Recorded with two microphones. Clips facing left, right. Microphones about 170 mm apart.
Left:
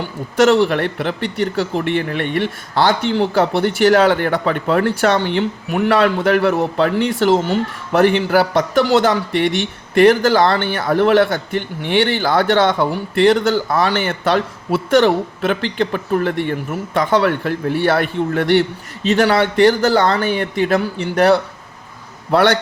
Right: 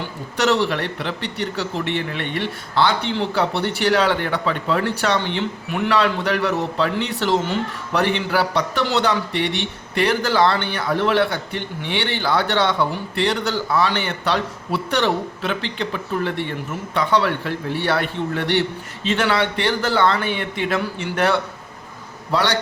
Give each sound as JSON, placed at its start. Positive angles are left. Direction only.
{"t": 0.3, "sound": "a man's voice", "side_deg": 50}
{"t": 22.3, "sound": "a man's voice", "side_deg": 55}